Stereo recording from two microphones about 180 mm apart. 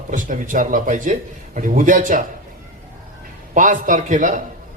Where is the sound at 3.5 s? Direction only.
45° right (ahead or behind).